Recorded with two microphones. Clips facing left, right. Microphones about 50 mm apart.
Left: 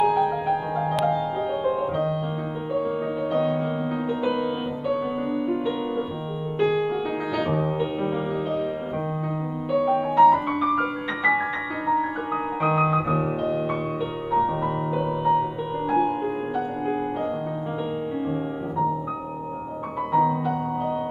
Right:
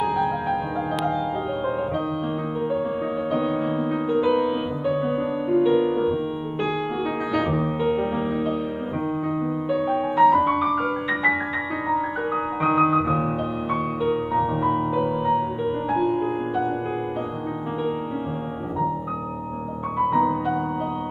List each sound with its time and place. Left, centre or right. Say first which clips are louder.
0.0 s music: left 2 dB; centre
3.3 s music: left 1 dB; centre
7.3 s music: right 1 dB; centre
9.8 s music: left 1 dB; centre
12.6 s piano: right 3 dB; centre
14.0 s music: right 1 dB; centre
20.0 s music: right 1 dB; centre